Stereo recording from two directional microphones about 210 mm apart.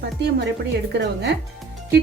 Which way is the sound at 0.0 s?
50° right (ahead or behind).